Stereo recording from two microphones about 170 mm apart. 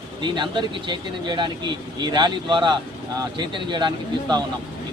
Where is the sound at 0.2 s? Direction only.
25° right (ahead or behind).